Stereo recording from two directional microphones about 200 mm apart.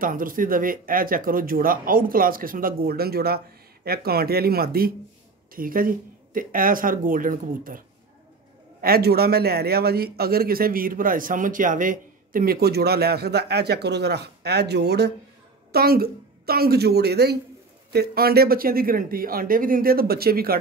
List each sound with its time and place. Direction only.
0.0 s a man's voice: 45° right (ahead or behind)
8.8 s a man's voice: 50° right (ahead or behind)